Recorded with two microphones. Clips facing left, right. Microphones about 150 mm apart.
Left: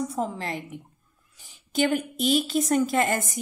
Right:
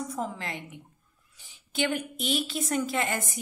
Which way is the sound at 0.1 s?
30° left (ahead or behind).